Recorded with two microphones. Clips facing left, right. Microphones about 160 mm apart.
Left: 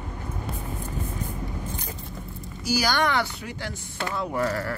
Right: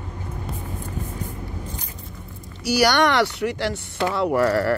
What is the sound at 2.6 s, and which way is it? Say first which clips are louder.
Speech: right 6 dB; 70° right (ahead or behind).